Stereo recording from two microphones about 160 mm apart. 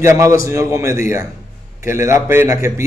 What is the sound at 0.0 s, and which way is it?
Speech, 20° right (ahead or behind).